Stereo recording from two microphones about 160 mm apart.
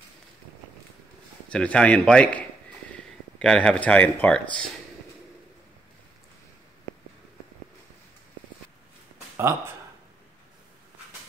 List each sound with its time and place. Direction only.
1.5 s speech: 5° left (ahead or behind)